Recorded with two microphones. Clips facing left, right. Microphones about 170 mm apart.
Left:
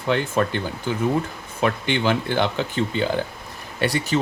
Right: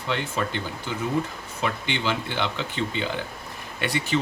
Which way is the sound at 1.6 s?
50° left (ahead or behind).